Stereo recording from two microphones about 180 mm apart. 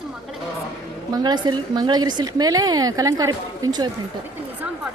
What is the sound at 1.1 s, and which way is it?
Speech, 25° right (ahead or behind).